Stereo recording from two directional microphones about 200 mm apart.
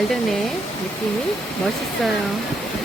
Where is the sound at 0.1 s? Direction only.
Centre (ahead or behind).